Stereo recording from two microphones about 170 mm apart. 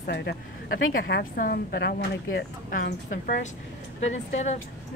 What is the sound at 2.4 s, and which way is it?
Speech, 85° left.